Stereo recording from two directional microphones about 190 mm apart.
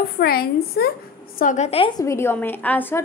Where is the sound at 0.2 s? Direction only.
55° left (ahead or behind).